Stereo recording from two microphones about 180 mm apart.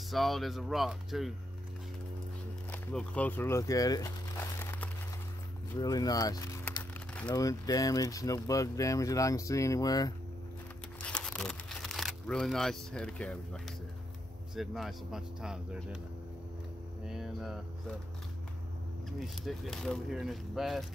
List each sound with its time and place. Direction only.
0.1 s speech: centre (ahead or behind)
2.7 s speech: 5° left (ahead or behind)
11.0 s crumpling: 5° left (ahead or behind)
14.5 s speech: centre (ahead or behind)
17.0 s hum: centre (ahead or behind)
19.1 s speech: centre (ahead or behind)